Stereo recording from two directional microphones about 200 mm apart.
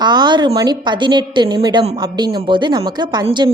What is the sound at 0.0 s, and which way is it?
A woman's voice, 20° right (ahead or behind).